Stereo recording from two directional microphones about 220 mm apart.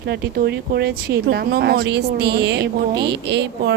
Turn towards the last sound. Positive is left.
turn(degrees=-50)  # may be behind; listen again after turning